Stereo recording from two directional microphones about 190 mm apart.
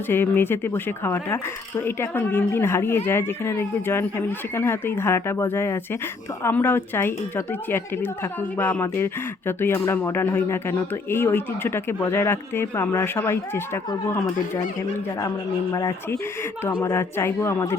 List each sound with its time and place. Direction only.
0.1 s speech: 10° left (ahead or behind)
15.7 s speech: 20° left (ahead or behind)